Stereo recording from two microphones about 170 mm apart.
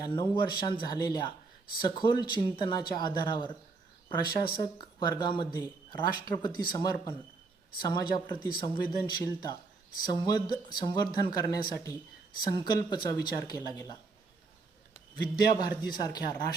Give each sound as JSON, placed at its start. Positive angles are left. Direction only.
{"t": 0.0, "sound": "speech", "side_deg": 25}
{"t": 15.4, "sound": "speech", "side_deg": 25}